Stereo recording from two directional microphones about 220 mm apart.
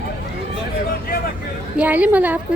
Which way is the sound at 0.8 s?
45° left (ahead or behind).